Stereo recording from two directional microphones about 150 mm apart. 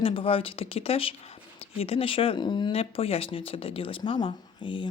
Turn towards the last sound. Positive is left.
turn(degrees=30)  # may be behind; listen again after turning